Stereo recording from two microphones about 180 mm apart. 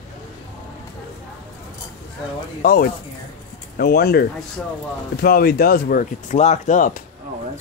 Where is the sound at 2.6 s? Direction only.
55° left (ahead or behind).